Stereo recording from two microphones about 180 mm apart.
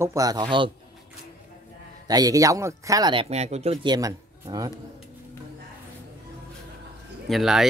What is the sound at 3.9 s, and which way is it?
Speech, 20° right (ahead or behind).